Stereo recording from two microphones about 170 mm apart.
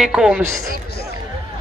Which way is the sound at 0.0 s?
5° right (ahead or behind).